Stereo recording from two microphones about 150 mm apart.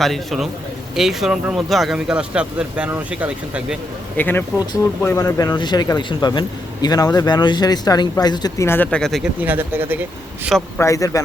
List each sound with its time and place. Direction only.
0.0 s a man's voice: centre (ahead or behind)
4.2 s speech: 15° left (ahead or behind)
5.0 s speech: 25° left (ahead or behind); by 9.3 s centre (ahead or behind)
9.4 s speech: 10° right (ahead or behind)
10.8 s speech: 20° left (ahead or behind)